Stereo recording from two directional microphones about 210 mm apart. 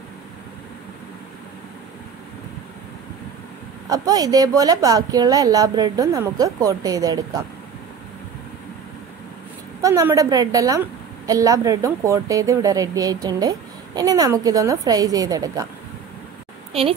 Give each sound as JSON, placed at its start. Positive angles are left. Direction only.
{"t": 3.9, "sound": "speech", "side_deg": -15}
{"t": 9.8, "sound": "speech", "side_deg": -15}